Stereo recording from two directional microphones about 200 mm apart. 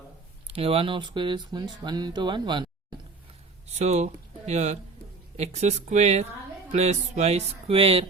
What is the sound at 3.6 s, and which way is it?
Speech, 35° right (ahead or behind).